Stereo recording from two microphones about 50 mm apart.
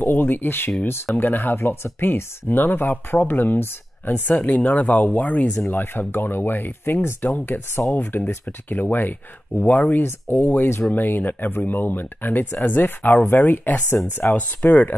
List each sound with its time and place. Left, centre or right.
0.0 s speech: left
4.4 s speech: left
5.7 s speech: left